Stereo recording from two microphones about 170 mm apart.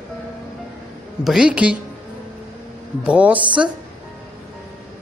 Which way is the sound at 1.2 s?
5° right (ahead or behind).